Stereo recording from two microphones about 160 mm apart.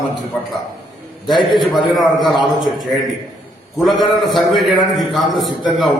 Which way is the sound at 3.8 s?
Centre (ahead or behind).